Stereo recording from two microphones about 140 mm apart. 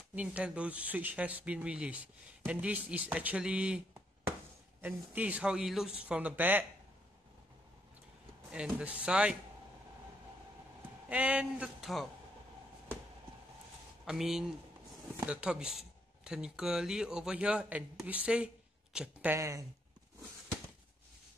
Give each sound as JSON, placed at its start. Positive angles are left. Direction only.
{"t": 0.1, "sound": "speech", "side_deg": -10}
{"t": 4.8, "sound": "speech", "side_deg": -10}
{"t": 8.5, "sound": "speech", "side_deg": -5}
{"t": 11.1, "sound": "speech", "side_deg": -10}
{"t": 14.0, "sound": "speech", "side_deg": -5}
{"t": 19.3, "sound": "speech", "side_deg": -20}